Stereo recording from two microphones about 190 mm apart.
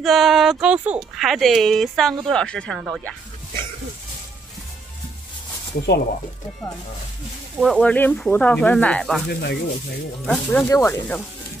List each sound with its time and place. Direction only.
0.0 s speech: centre (ahead or behind)
7.5 s speech: 5° left (ahead or behind)
9.3 s speech: 60° left (ahead or behind)
10.2 s speech: 5° left (ahead or behind)
10.6 s speech: 15° left (ahead or behind)